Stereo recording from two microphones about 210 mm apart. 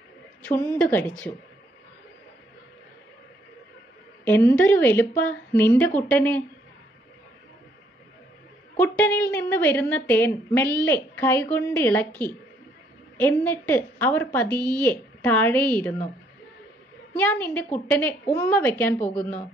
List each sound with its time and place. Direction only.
0.4 s a woman's voice: 10° left (ahead or behind)
4.2 s a woman's voice: 10° left (ahead or behind)
8.7 s a woman's voice: 10° left (ahead or behind)
13.2 s a woman's voice: 10° left (ahead or behind)
17.2 s a woman's voice: 10° left (ahead or behind)